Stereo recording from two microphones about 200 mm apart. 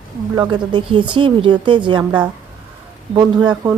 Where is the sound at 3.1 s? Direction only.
20° right (ahead or behind).